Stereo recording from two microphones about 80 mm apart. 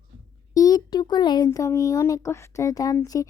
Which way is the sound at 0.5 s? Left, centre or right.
Left.